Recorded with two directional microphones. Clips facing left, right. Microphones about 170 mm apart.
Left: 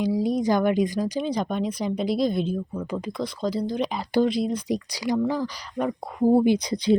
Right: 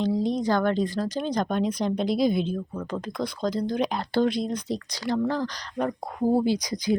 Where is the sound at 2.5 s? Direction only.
10° left (ahead or behind).